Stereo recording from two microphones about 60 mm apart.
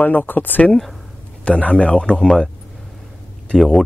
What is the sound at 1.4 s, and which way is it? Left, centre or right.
Speech, left.